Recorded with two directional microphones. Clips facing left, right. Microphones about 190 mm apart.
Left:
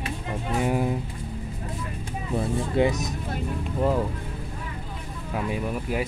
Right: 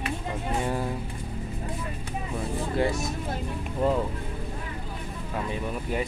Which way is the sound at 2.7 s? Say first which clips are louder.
Left 3 dB; 20° left (ahead or behind).